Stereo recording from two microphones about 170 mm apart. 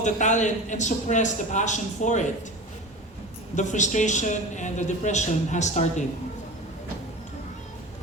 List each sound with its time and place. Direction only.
0.0 s a man's voice: 45° left (ahead or behind)
3.5 s a man's voice: 45° left (ahead or behind)